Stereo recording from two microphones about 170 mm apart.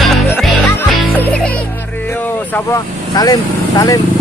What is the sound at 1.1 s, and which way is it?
Music, 10° left (ahead or behind).